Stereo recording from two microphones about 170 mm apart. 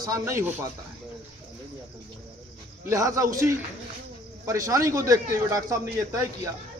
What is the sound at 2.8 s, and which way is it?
A man's voice, 20° right (ahead or behind).